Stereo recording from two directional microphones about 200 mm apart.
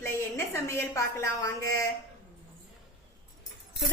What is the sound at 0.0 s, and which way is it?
A woman's voice, 15° left (ahead or behind).